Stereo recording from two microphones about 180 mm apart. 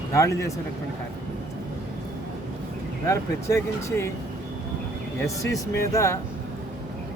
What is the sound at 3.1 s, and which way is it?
Speech, 15° left (ahead or behind).